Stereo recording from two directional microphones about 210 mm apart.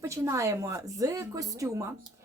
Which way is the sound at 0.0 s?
15° right (ahead or behind).